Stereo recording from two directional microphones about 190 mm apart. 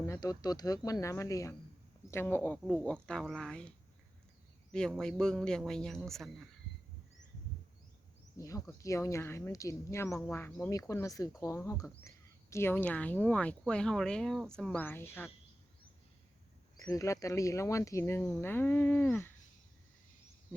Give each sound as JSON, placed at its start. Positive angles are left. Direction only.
{"t": 0.0, "sound": "a man's voice", "side_deg": 20}
{"t": 4.7, "sound": "a man's voice", "side_deg": 5}
{"t": 8.4, "sound": "speech", "side_deg": 15}
{"t": 16.8, "sound": "speech", "side_deg": 20}